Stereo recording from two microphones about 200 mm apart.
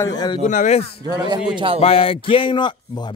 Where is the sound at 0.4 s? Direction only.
40° left (ahead or behind).